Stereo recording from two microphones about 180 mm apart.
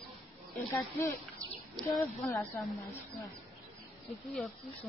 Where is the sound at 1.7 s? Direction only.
Centre (ahead or behind).